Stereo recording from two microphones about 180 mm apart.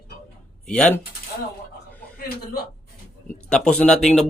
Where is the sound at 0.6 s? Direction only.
5° left (ahead or behind).